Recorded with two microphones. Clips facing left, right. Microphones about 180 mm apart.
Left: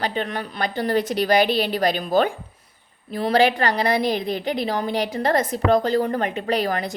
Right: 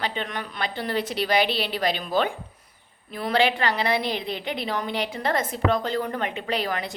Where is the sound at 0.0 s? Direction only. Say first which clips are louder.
Left 4 dB; 40° left (ahead or behind).